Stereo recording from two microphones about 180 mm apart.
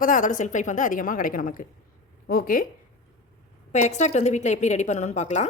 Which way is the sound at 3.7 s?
40° left (ahead or behind).